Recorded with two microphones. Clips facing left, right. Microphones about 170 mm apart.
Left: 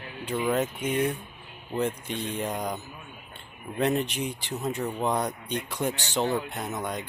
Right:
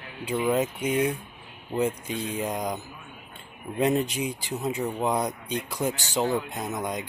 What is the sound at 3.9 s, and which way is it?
Speech, 10° right (ahead or behind).